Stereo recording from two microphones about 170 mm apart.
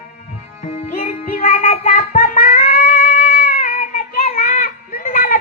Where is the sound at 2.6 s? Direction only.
45° left (ahead or behind).